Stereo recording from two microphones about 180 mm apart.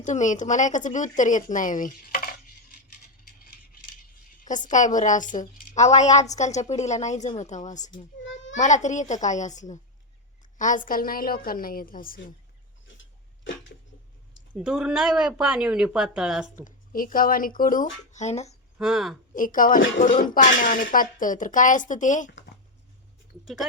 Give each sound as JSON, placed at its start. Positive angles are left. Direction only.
{"t": 0.0, "sound": "a woman's voice", "side_deg": 45}
{"t": 4.4, "sound": "a woman's voice", "side_deg": 45}
{"t": 14.5, "sound": "speech", "side_deg": -5}
{"t": 16.6, "sound": "a woman's voice", "side_deg": 50}
{"t": 18.8, "sound": "speech", "side_deg": 0}
{"t": 19.3, "sound": "a woman's voice", "side_deg": 50}